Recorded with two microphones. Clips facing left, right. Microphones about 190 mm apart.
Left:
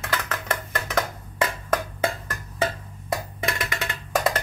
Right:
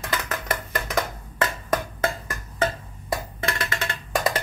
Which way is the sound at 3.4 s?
15° left (ahead or behind).